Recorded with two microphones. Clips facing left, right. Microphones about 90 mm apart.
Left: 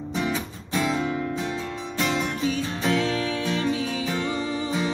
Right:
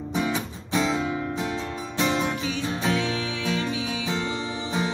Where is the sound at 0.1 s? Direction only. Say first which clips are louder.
Right 1 dB; 15° right (ahead or behind).